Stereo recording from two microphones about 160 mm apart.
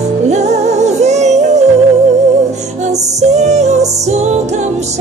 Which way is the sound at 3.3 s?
45° right (ahead or behind).